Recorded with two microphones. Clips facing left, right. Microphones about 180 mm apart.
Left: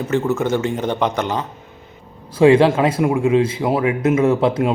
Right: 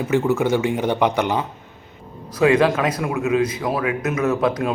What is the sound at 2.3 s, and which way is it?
Speech, 30° left (ahead or behind).